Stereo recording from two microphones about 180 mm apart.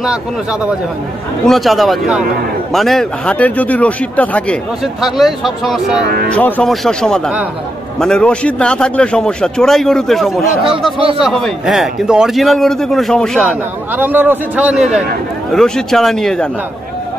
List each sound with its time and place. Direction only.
0.0 s a man's voice: 5° right (ahead or behind)
6.0 s speech: 65° right (ahead or behind)
6.3 s a man's voice: 10° left (ahead or behind)
13.9 s a man's voice: 10° right (ahead or behind)